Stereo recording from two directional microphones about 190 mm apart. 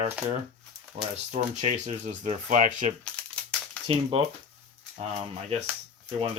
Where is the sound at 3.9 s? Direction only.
30° right (ahead or behind).